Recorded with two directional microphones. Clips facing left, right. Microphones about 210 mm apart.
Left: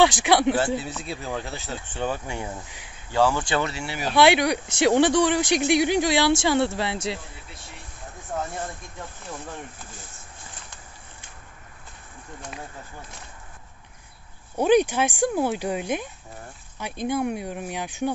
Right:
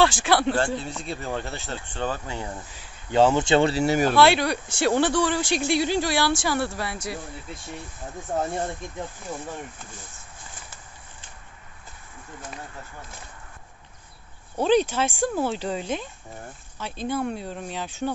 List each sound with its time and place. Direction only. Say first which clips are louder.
0.0 s speech: left 2 dB; 15° left (ahead or behind)
0.7 s speech: left 1 dB; 5° left (ahead or behind)
3.1 s speech: right 4 dB; 20° right (ahead or behind); by 4.1 s 45° right (ahead or behind)
4.1 s speech: left 6 dB; 15° left (ahead or behind)
14.6 s speech: left 2 dB; 15° left (ahead or behind)